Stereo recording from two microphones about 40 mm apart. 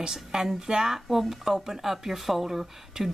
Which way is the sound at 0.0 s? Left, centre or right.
Centre.